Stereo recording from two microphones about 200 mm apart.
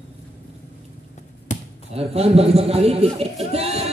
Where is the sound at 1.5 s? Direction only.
35° left (ahead or behind).